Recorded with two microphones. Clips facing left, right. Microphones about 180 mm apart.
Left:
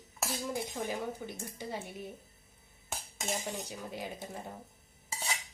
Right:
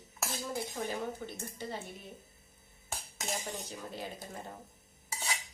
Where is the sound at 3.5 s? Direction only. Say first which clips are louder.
Left 2 dB; 15° left (ahead or behind).